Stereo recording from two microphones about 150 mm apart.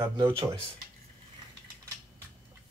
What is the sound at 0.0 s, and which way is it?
Speech, 20° right (ahead or behind).